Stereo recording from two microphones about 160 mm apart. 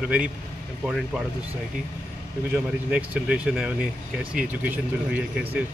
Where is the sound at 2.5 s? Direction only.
10° right (ahead or behind).